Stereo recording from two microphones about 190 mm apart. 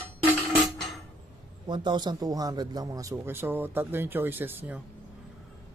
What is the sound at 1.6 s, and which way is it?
A man's voice, 25° right (ahead or behind).